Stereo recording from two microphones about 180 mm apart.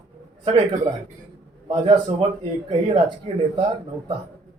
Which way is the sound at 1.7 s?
30° right (ahead or behind).